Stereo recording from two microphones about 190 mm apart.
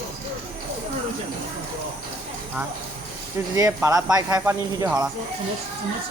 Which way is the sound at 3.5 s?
15° right (ahead or behind).